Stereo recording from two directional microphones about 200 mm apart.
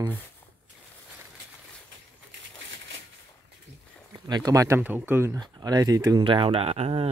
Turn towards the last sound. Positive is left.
turn(degrees=-30)  # may be behind; listen again after turning